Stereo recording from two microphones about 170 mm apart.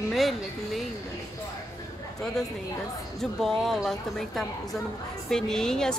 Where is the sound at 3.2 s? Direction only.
Centre (ahead or behind).